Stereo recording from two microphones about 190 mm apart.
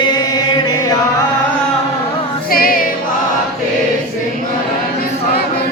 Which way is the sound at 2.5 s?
50° left (ahead or behind).